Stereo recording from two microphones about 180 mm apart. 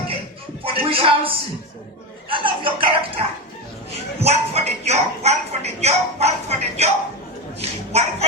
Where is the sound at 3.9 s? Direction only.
35° right (ahead or behind).